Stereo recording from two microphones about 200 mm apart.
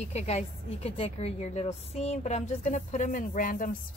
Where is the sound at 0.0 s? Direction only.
35° left (ahead or behind).